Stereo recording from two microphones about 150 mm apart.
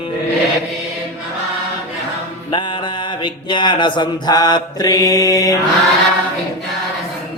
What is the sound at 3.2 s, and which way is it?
Mantra, 30° left (ahead or behind).